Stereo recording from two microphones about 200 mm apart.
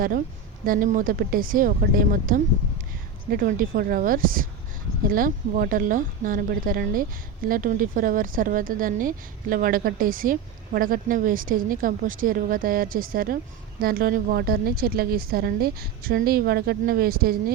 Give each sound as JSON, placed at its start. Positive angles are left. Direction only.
{"t": 0.6, "sound": "a woman's voice", "side_deg": -45}